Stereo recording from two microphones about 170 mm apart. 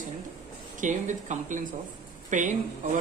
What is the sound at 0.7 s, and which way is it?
Speech, 45° right (ahead or behind).